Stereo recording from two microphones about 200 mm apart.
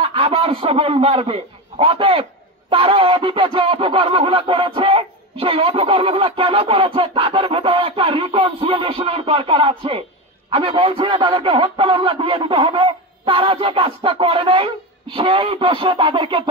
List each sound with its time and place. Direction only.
0.0 s a man's voice: 30° right (ahead or behind)